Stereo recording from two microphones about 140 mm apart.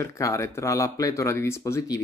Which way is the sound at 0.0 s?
20° left (ahead or behind).